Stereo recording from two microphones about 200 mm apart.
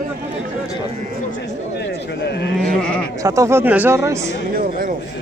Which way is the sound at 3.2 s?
15° right (ahead or behind).